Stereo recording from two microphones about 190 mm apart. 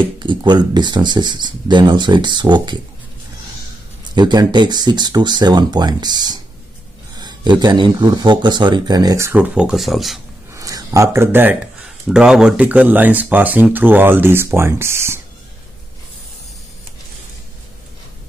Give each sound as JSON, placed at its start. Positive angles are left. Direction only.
{"t": 0.0, "sound": "speech", "side_deg": -25}
{"t": 4.1, "sound": "speech", "side_deg": -20}
{"t": 10.5, "sound": "speech", "side_deg": -20}